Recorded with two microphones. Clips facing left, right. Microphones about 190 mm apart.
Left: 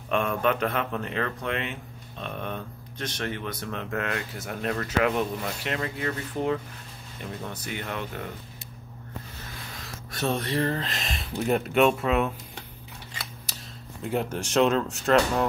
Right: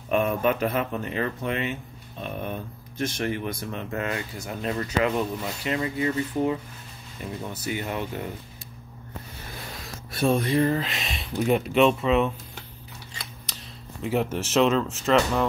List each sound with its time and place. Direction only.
0.4 s speech: 5° right (ahead or behind)
10.1 s speech: 10° right (ahead or behind)
14.0 s speech: 5° right (ahead or behind)